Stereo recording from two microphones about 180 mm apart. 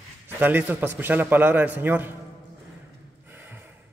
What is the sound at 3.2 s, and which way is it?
Snort, 10° right (ahead or behind).